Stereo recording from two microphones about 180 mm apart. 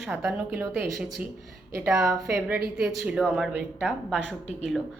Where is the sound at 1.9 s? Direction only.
15° right (ahead or behind).